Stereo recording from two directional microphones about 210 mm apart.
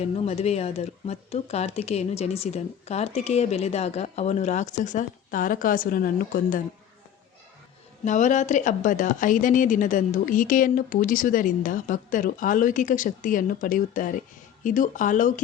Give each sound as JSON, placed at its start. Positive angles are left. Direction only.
{"t": 0.0, "sound": "speech", "side_deg": 30}
{"t": 8.0, "sound": "speech", "side_deg": 35}